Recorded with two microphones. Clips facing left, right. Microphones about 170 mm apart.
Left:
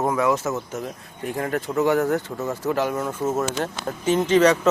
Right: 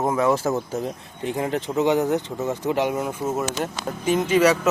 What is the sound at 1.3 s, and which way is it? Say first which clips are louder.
Speech: right 1 dB; 20° right (ahead or behind).